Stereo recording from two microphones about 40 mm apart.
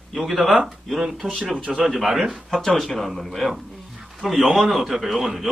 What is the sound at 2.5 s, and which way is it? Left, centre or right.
A man's voice, centre.